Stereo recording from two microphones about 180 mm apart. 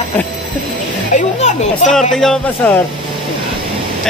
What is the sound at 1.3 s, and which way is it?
Speech, 40° left (ahead or behind).